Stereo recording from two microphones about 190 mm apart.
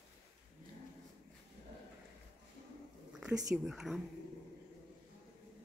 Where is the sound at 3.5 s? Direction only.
Centre (ahead or behind).